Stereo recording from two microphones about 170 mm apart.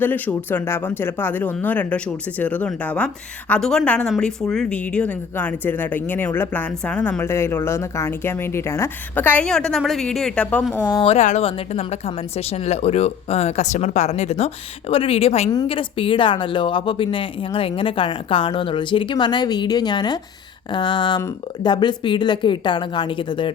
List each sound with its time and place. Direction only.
0.0 s speech: 10° left (ahead or behind)
10.8 s a woman's voice: 30° left (ahead or behind)